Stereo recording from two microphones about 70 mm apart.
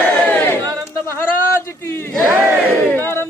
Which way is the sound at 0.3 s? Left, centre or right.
Left.